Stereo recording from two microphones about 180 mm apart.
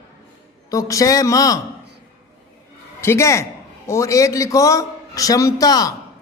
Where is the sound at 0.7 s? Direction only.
20° left (ahead or behind).